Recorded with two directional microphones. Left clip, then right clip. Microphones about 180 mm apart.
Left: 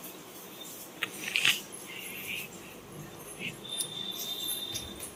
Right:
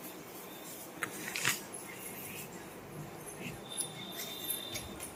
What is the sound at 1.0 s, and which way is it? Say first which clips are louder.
Biting: left 8 dB; 25° right (ahead or behind).